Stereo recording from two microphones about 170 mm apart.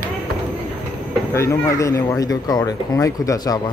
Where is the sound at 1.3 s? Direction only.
15° left (ahead or behind).